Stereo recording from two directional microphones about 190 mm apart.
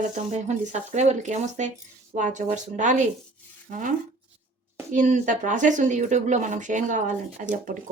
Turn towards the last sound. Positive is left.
turn(degrees=-45)  # may be behind; listen again after turning